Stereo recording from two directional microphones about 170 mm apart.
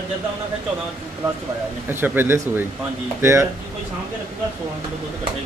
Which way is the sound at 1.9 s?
10° right (ahead or behind).